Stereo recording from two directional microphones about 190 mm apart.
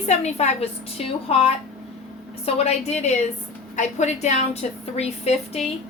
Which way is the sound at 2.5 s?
35° left (ahead or behind).